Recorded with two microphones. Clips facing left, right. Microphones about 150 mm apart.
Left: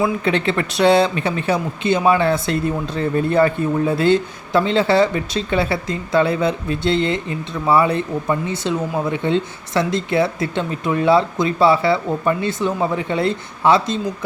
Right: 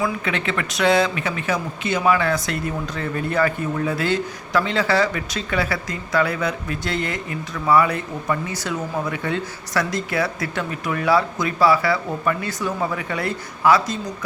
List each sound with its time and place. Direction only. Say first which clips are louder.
0.0 s speech: left 5 dB; 30° left (ahead or behind)